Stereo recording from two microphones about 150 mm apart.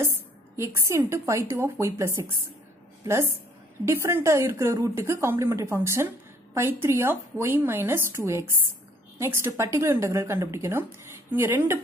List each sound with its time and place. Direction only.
0.6 s a woman's voice: 20° right (ahead or behind)
3.8 s speech: 15° right (ahead or behind)